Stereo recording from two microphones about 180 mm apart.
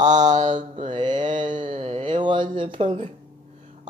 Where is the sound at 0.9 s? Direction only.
25° right (ahead or behind).